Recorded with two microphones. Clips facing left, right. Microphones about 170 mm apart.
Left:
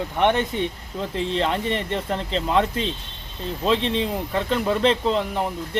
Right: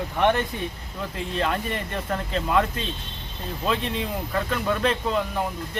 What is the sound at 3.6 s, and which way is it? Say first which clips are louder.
Speech: left 5 dB; 25° left (ahead or behind).